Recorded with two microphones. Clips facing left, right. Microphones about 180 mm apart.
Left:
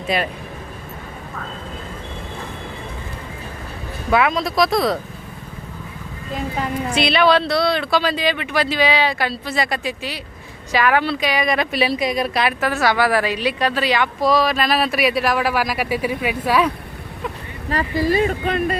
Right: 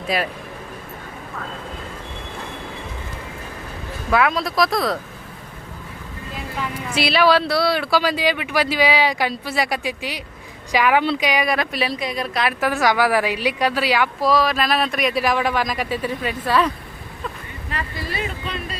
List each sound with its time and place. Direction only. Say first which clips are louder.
0.1 s a woman's voice: left 1 dB; centre (ahead or behind)
4.1 s a woman's voice: left 1 dB; centre (ahead or behind)
6.9 s speech: even; 5° right (ahead or behind)
11.5 s a woman's voice: left 3 dB; centre (ahead or behind)
11.9 s a woman's voice: left 4 dB; 15° left (ahead or behind)
12.5 s a woman's voice: right 3 dB; 10° right (ahead or behind); by 16.7 s 10° left (ahead or behind)
17.7 s speech: left 11 dB; 40° left (ahead or behind)